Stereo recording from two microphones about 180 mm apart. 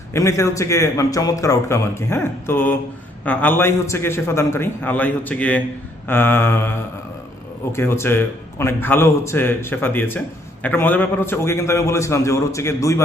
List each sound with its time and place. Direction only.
0.1 s a man's voice: 15° left (ahead or behind)